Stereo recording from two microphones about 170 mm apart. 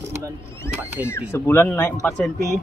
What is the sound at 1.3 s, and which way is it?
Speech, 15° left (ahead or behind).